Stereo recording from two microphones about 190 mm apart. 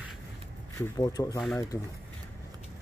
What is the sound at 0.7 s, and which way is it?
Speech, 20° left (ahead or behind).